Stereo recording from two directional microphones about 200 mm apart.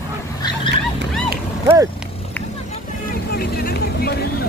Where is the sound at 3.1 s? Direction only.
50° left (ahead or behind).